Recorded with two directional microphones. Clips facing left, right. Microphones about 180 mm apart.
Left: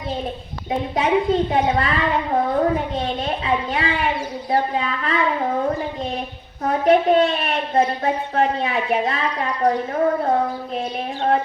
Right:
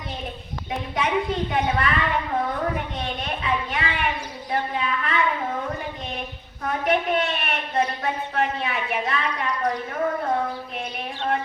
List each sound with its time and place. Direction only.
0.7 s a child's voice: 25° left (ahead or behind)
6.7 s a woman's voice: 30° left (ahead or behind)